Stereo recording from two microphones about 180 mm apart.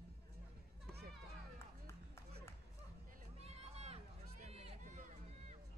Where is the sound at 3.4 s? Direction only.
35° right (ahead or behind).